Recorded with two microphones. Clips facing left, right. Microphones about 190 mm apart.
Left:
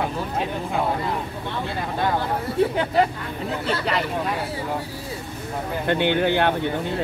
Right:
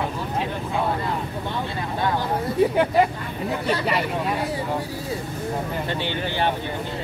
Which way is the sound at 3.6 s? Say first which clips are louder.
Right 1 dB; 10° right (ahead or behind).